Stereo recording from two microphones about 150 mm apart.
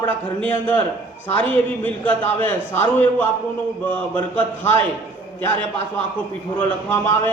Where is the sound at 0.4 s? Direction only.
10° left (ahead or behind).